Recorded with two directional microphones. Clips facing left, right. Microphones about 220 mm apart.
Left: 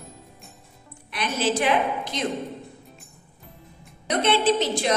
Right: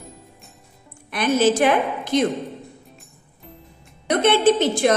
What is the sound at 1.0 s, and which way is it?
A woman's voice, 50° right (ahead or behind).